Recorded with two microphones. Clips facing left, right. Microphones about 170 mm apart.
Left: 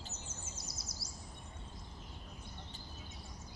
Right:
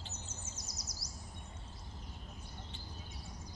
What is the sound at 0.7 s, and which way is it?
Bird vocalization, 25° left (ahead or behind).